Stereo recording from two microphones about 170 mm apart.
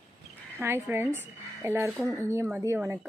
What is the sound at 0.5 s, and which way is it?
A woman's voice, 15° right (ahead or behind).